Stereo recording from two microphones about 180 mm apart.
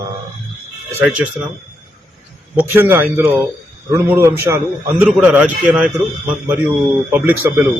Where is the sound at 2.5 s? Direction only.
10° right (ahead or behind).